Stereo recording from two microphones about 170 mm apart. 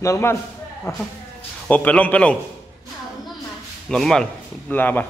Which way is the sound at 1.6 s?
10° left (ahead or behind).